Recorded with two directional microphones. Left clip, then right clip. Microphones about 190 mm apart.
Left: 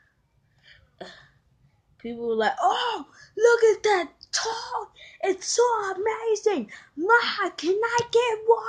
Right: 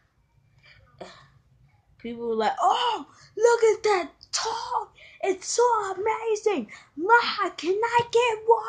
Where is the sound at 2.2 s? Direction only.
10° left (ahead or behind).